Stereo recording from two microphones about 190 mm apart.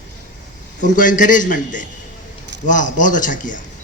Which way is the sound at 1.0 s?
45° left (ahead or behind).